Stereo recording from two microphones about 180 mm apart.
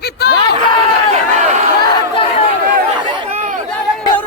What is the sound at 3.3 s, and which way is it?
Chatter, 45° right (ahead or behind).